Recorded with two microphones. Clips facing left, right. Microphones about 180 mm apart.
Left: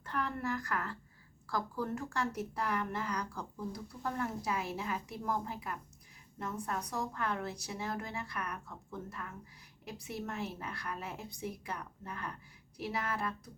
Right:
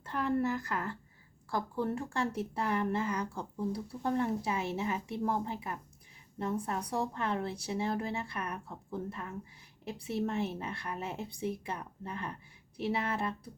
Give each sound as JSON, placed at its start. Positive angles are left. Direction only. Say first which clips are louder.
{"t": 0.0, "sound": "speech", "louder": "right 6 dB", "side_deg": -25}